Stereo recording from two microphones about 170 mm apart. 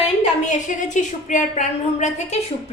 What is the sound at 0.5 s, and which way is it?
A woman's voice, 45° left (ahead or behind).